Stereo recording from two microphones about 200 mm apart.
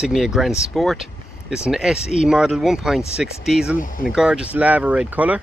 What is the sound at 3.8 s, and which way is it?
Speech, 45° left (ahead or behind).